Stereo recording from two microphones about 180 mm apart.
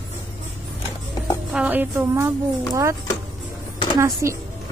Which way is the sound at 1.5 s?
10° right (ahead or behind).